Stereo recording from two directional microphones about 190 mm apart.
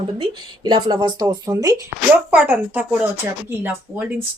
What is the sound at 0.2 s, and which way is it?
A woman's voice, 25° right (ahead or behind).